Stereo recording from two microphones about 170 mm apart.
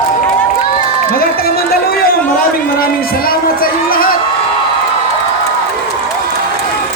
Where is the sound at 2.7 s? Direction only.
60° left (ahead or behind).